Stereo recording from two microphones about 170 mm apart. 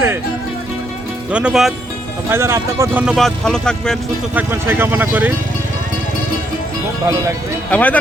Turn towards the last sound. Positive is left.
turn(degrees=10)  # may be behind; listen again after turning